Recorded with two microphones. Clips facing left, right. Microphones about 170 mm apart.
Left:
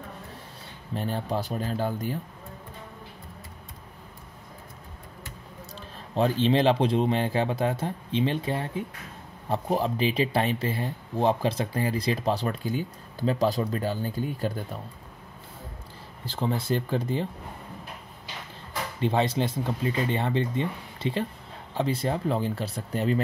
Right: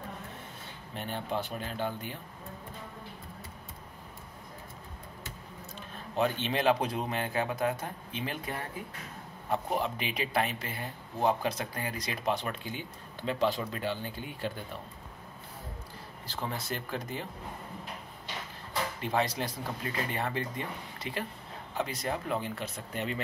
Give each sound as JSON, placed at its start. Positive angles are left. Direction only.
{"t": 0.9, "sound": "speech", "side_deg": 35}
{"t": 5.8, "sound": "a man's voice", "side_deg": 35}
{"t": 16.3, "sound": "a man's voice", "side_deg": 25}
{"t": 18.9, "sound": "a man's voice", "side_deg": 30}